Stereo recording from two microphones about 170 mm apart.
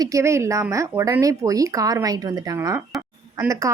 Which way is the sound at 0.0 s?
20° right (ahead or behind).